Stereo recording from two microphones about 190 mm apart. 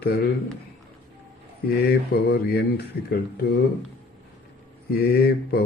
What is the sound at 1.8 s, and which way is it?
Speech, 55° left (ahead or behind).